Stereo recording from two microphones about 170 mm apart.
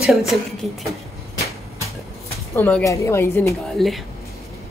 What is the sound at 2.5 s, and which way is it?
A woman's voice, 15° left (ahead or behind).